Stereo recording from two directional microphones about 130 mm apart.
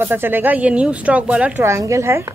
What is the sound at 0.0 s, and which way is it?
Speech, 15° right (ahead or behind).